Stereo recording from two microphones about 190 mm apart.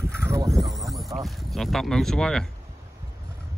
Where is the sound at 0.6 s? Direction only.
Centre (ahead or behind).